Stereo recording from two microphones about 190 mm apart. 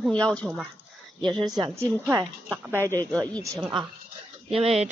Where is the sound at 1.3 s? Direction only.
20° right (ahead or behind).